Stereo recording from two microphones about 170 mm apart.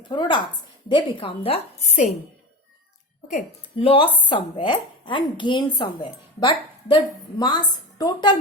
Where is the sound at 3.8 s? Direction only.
30° left (ahead or behind).